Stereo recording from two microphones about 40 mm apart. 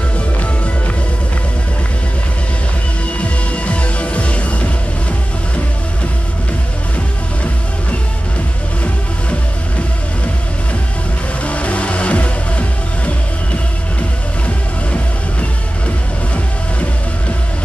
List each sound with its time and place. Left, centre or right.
3.2 s music: left
11.4 s music: left